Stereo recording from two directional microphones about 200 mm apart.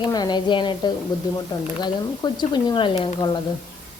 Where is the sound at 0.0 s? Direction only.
20° left (ahead or behind).